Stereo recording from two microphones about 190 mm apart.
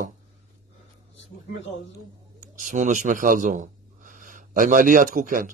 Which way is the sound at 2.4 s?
40° right (ahead or behind).